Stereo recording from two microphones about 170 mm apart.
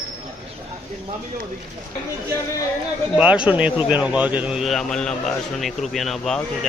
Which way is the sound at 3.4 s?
5° right (ahead or behind).